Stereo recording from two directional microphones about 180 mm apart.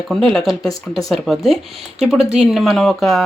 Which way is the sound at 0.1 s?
Centre (ahead or behind).